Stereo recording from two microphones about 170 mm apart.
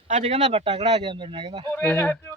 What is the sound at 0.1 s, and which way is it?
Speech, 35° right (ahead or behind).